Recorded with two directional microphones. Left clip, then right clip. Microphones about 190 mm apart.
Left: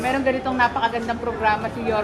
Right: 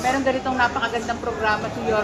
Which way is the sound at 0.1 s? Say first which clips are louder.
Right 1 dB; 25° left (ahead or behind).